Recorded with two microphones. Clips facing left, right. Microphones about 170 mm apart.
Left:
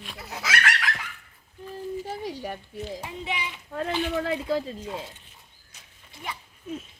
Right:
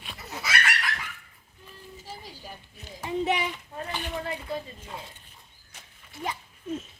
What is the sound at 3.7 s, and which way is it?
Speech, 80° left.